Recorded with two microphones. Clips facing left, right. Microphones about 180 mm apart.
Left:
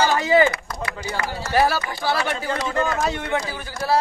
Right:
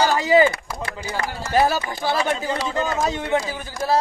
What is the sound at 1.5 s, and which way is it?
A man's voice, 20° right (ahead or behind).